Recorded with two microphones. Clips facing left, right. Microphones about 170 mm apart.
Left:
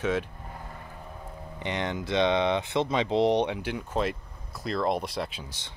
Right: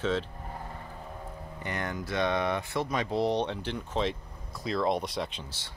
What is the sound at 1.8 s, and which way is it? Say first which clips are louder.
Speech: left 4 dB; 20° left (ahead or behind).